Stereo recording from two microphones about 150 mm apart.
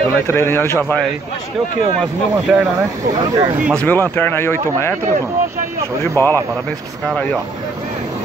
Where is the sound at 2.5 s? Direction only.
5° right (ahead or behind).